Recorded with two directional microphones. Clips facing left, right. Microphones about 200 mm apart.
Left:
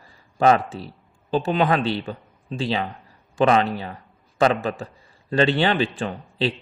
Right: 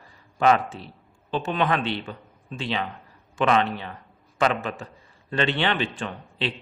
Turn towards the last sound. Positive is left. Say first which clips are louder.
# left 5 dB
turn(degrees=35)  # may be behind; listen again after turning